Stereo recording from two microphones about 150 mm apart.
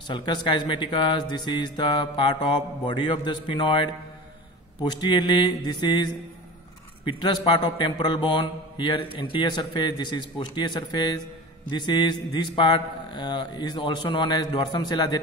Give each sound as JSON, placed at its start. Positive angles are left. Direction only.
{"t": 0.0, "sound": "a man's voice", "side_deg": 30}